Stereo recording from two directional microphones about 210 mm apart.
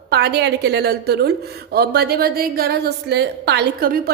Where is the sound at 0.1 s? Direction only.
50° right (ahead or behind).